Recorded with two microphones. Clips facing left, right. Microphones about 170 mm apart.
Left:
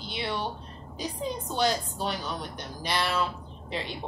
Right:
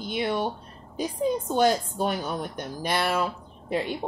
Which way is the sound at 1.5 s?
50° right (ahead or behind).